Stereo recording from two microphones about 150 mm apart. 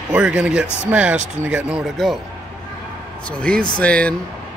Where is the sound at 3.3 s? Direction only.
5° left (ahead or behind).